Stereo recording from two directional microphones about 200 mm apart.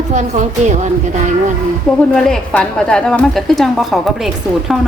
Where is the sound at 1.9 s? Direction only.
Centre (ahead or behind).